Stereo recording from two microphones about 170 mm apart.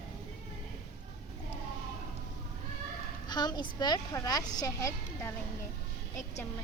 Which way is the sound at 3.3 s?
25° left (ahead or behind).